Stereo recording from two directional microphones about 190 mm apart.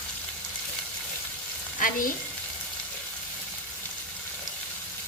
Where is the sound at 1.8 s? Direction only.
45° left (ahead or behind).